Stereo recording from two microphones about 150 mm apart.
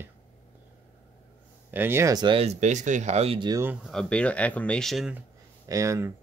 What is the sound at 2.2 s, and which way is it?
Speech, 40° right (ahead or behind).